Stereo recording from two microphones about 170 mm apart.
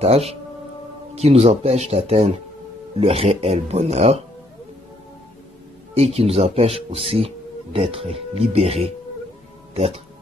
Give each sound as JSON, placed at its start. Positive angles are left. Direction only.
{"t": 0.0, "sound": "speech", "side_deg": -35}
{"t": 5.9, "sound": "speech", "side_deg": -35}